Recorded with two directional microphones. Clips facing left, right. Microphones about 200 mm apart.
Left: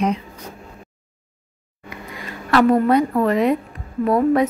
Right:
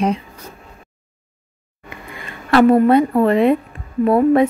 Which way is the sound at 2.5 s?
25° right (ahead or behind).